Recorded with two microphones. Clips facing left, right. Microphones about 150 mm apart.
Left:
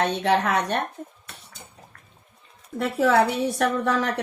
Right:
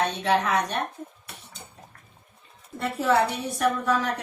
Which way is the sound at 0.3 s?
60° left (ahead or behind).